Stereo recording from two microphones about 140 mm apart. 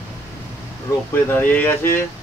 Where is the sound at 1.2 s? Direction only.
15° left (ahead or behind).